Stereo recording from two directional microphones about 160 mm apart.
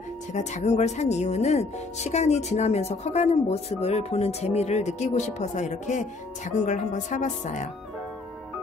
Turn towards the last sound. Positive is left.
turn(degrees=50)  # may be behind; listen again after turning